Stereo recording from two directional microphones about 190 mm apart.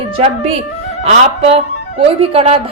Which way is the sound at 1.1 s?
35° right (ahead or behind).